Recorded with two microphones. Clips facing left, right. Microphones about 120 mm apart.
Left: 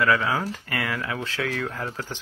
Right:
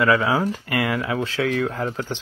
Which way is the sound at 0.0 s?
15° right (ahead or behind).